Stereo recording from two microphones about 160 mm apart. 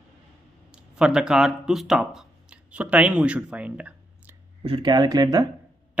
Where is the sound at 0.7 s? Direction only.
5° right (ahead or behind).